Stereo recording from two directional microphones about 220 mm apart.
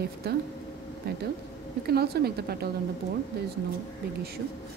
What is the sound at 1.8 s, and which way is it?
Speech, 45° right (ahead or behind).